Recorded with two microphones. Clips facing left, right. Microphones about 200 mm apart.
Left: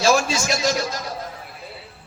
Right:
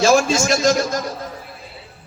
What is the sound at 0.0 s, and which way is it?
Speech, 50° right (ahead or behind).